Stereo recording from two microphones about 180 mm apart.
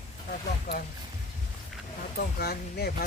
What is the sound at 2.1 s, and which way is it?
Speech, 60° left (ahead or behind).